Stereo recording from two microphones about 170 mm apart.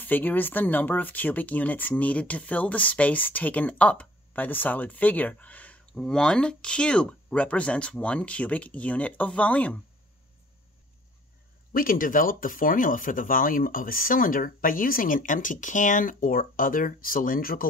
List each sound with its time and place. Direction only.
0.0 s speech: 10° left (ahead or behind)
11.7 s speech: 55° left (ahead or behind)